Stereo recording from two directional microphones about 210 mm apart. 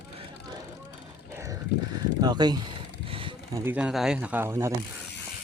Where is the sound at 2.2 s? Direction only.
20° right (ahead or behind).